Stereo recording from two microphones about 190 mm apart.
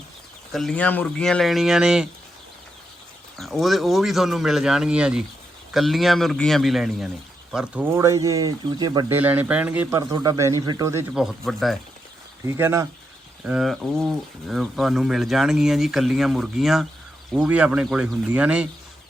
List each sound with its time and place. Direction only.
0.5 s speech: 5° left (ahead or behind)
3.3 s speech: centre (ahead or behind); by 9.1 s 20° right (ahead or behind)
9.1 s speech: 10° right (ahead or behind)
11.1 s speech: 5° right (ahead or behind)
12.5 s speech: 15° right (ahead or behind)